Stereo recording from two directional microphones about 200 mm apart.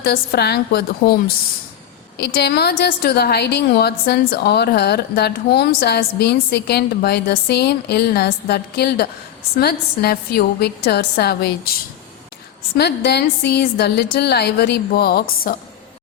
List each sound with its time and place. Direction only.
0.0 s a woman's voice: 50° left (ahead or behind)